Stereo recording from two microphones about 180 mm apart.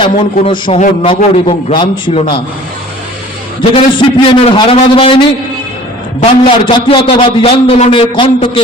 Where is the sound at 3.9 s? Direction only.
30° left (ahead or behind).